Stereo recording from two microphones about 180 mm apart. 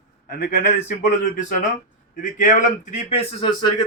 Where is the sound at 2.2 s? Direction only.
45° left (ahead or behind).